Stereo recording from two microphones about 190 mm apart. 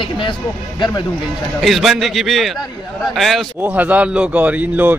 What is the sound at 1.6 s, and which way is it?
A man's voice, centre (ahead or behind).